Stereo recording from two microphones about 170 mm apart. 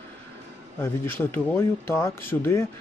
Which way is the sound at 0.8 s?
15° left (ahead or behind).